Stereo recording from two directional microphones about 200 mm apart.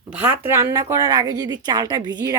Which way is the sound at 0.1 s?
10° right (ahead or behind).